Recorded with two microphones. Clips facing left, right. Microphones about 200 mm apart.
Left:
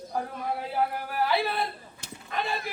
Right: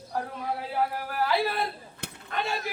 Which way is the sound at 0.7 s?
Centre (ahead or behind).